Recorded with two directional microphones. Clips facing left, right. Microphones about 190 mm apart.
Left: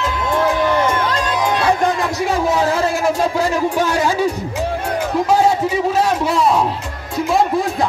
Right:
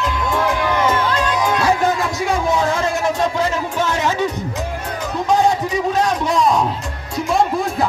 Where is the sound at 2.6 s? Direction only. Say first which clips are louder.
Left 2 dB; 35° left (ahead or behind).